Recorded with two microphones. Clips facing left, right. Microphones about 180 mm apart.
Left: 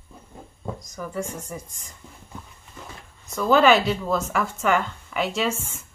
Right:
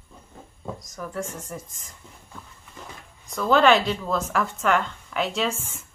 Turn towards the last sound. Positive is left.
turn(degrees=0)  # may be behind; listen again after turning